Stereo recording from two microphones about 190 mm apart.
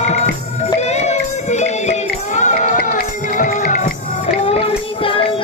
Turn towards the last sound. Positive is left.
turn(degrees=30)  # may be behind; listen again after turning